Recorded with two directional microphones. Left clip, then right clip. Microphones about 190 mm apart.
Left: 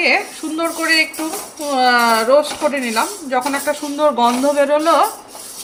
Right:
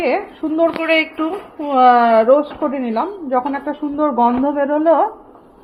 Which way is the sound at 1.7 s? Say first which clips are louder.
Right 3 dB; 25° right (ahead or behind).